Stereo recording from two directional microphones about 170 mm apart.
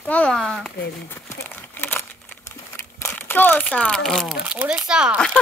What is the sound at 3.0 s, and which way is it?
Speech, 15° left (ahead or behind).